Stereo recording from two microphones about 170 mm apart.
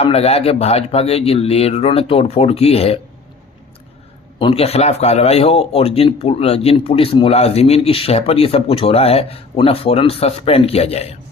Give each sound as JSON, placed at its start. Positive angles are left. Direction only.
{"t": 0.0, "sound": "speech", "side_deg": 35}
{"t": 4.4, "sound": "speech", "side_deg": 30}